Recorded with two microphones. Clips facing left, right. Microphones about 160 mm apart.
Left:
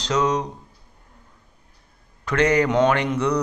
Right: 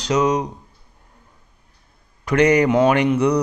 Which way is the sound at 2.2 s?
15° right (ahead or behind).